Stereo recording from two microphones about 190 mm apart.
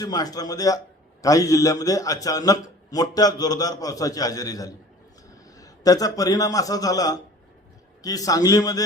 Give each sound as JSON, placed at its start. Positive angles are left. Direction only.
{"t": 0.0, "sound": "a man's voice", "side_deg": 20}